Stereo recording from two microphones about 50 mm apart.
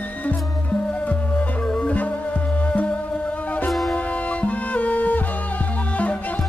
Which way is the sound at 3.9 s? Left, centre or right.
Left.